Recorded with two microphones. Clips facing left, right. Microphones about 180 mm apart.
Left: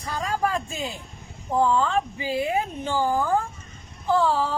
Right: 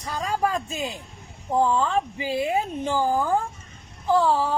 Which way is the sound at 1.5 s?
15° right (ahead or behind).